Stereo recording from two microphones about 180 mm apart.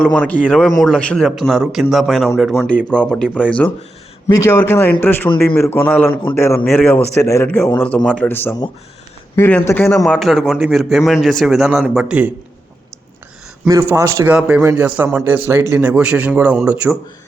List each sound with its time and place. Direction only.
0.0 s a man's voice: 5° left (ahead or behind)
13.7 s a man's voice: 15° right (ahead or behind)